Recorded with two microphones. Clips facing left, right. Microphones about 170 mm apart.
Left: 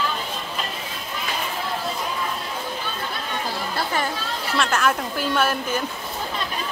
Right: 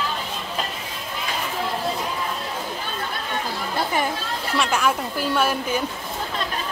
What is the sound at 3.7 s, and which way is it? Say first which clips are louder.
Chatter: right 3 dB; 15° right (ahead or behind).